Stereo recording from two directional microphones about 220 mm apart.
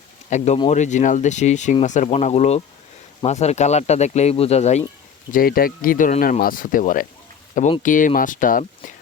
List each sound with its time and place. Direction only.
0.3 s speech: 30° left (ahead or behind)
5.3 s speech: 40° left (ahead or behind)